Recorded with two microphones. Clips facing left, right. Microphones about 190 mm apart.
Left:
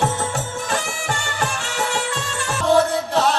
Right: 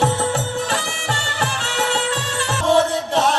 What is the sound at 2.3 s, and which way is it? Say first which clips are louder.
Music: even; 25° right (ahead or behind).